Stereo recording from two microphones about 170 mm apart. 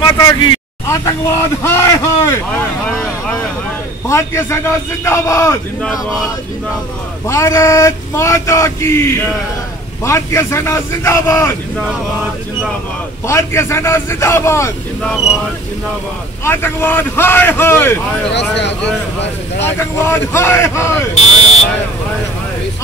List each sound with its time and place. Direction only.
0.0 s speech: 25° left (ahead or behind)
4.1 s speech: 15° left (ahead or behind)
5.8 s speech: 5° left (ahead or behind)
7.2 s speech: 15° left (ahead or behind)
13.3 s speech: 15° left (ahead or behind)
16.4 s speech: 10° left (ahead or behind)
19.6 s speech: 15° left (ahead or behind)
21.1 s buzzer: 40° left (ahead or behind)